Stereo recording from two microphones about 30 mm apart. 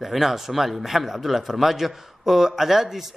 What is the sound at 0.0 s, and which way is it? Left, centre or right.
A man's voice, centre.